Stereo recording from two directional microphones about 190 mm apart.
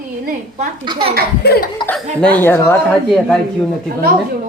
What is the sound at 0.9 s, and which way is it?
Speech, 25° right (ahead or behind).